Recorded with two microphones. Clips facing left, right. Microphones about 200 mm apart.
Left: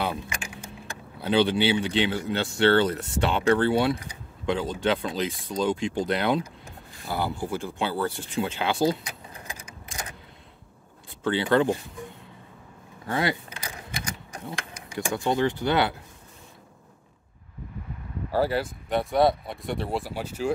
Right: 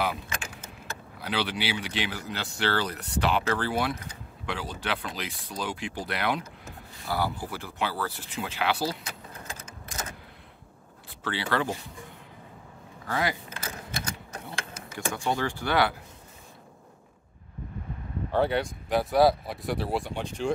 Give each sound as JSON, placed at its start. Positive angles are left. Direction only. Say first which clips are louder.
{"t": 1.1, "sound": "a man's voice", "louder": "left 9 dB", "side_deg": 25}
{"t": 11.2, "sound": "a man's voice", "louder": "left 7 dB", "side_deg": 20}
{"t": 13.0, "sound": "speech", "louder": "left 3 dB", "side_deg": 25}
{"t": 13.6, "sound": "keys jangling", "louder": "even", "side_deg": 15}
{"t": 18.3, "sound": "speech", "louder": "left 1 dB", "side_deg": 5}